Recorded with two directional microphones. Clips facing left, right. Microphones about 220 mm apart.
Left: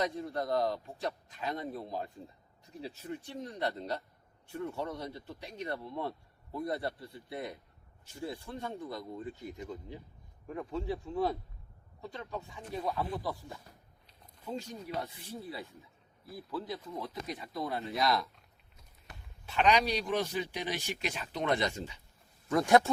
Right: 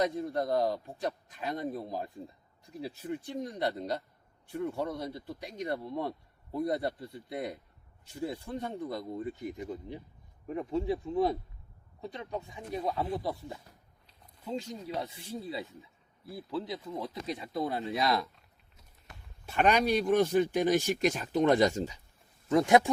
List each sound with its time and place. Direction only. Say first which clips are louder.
0.0 s speech: right 4 dB; 20° right (ahead or behind)
19.5 s speech: right 2 dB; 50° right (ahead or behind)
22.4 s speech: right 2 dB; 20° right (ahead or behind)